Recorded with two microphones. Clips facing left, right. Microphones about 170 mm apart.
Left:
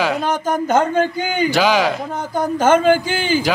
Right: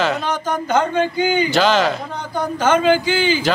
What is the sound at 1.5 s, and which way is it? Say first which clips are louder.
Speech: left 1 dB; 10° left (ahead or behind).